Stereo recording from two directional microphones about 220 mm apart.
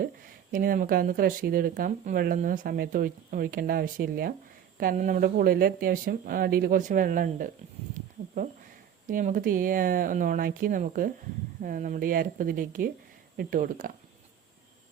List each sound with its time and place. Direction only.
0.5 s speech: 40° right (ahead or behind)
9.0 s speech: 40° right (ahead or behind)